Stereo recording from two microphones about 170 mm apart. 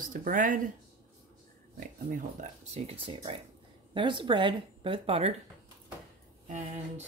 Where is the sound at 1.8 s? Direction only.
50° right (ahead or behind); by 5.3 s 35° right (ahead or behind).